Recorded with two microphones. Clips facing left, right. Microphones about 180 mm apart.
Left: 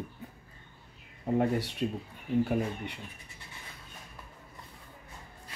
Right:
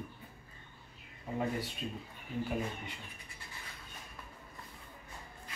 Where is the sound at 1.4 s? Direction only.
75° left (ahead or behind).